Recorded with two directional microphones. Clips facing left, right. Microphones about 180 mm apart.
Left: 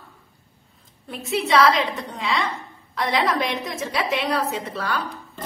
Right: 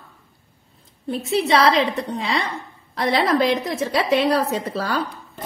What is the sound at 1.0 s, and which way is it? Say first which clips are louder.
A woman's voice: right 5 dB; 35° right (ahead or behind).